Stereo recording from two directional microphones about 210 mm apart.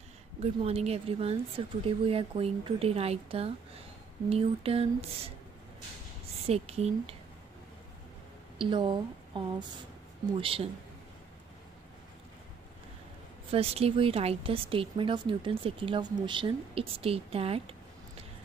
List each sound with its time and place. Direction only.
0.4 s a woman's voice: 30° right (ahead or behind)
6.4 s a woman's voice: 30° right (ahead or behind)
8.5 s a woman's voice: 25° right (ahead or behind)
13.5 s a woman's voice: 30° right (ahead or behind)